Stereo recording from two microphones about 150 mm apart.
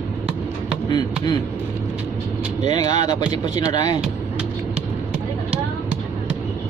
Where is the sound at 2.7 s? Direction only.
25° left (ahead or behind).